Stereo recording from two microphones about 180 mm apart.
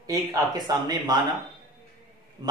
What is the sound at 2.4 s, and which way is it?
Speech, 20° right (ahead or behind).